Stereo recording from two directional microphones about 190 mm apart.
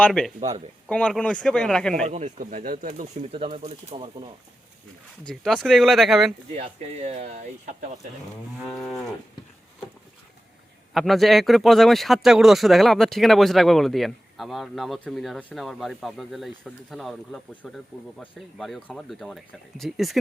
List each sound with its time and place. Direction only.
0.0 s speech: 5° left (ahead or behind)
0.3 s speech: 35° right (ahead or behind)
0.9 s speech: 5° left (ahead or behind)
2.0 s speech: 35° right (ahead or behind)
3.3 s speech: 30° right (ahead or behind)
5.3 s speech: centre (ahead or behind)
6.6 s speech: 35° right (ahead or behind)
8.6 s speech: centre (ahead or behind)
10.9 s speech: centre (ahead or behind)